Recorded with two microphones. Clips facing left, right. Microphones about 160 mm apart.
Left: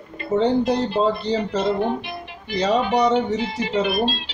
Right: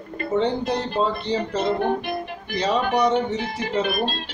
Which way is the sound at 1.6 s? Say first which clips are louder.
Left 1 dB; 50° right (ahead or behind).